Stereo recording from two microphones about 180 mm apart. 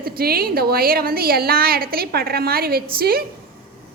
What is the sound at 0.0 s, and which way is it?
A woman's voice, 55° right (ahead or behind).